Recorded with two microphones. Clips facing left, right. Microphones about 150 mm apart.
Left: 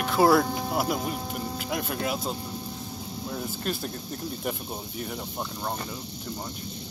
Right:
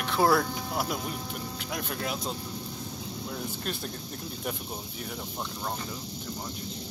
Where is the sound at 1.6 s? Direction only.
5° left (ahead or behind).